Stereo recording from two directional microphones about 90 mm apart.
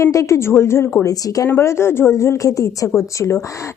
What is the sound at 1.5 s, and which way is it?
A woman's voice, 30° left (ahead or behind).